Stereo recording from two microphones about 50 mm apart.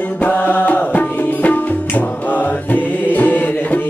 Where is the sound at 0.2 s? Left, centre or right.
Left.